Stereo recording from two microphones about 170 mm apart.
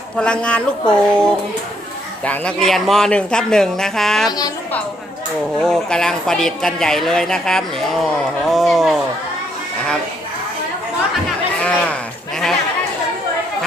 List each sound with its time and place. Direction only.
0.2 s speech: 5° left (ahead or behind)
4.3 s a woman's voice: 20° left (ahead or behind)
5.5 s speech: 5° left (ahead or behind)
11.6 s a sound: 10° left (ahead or behind)